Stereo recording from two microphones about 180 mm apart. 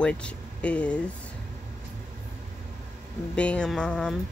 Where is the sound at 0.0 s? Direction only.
5° left (ahead or behind).